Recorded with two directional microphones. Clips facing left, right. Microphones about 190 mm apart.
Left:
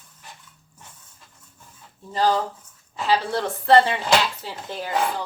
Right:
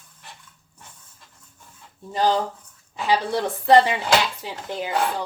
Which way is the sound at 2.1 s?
15° right (ahead or behind).